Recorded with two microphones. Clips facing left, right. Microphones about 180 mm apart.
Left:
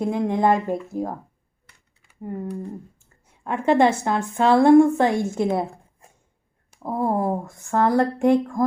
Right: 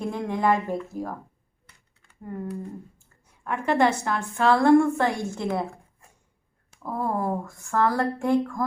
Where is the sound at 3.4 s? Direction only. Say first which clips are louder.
Left 4 dB; 25° left (ahead or behind).